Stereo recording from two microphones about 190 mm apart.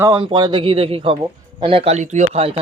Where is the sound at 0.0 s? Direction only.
25° right (ahead or behind).